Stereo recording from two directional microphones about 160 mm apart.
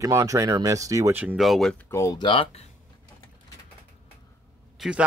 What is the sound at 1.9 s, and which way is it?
Speech, 20° left (ahead or behind).